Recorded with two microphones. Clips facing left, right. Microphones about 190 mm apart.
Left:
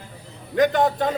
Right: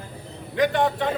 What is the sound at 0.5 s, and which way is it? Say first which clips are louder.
Speech: left 3 dB; 45° left (ahead or behind).